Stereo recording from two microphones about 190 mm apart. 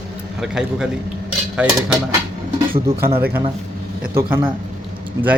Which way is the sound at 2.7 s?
10° right (ahead or behind).